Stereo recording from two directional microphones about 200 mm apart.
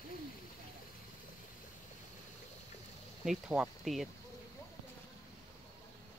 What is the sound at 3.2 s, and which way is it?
Speech, 5° right (ahead or behind).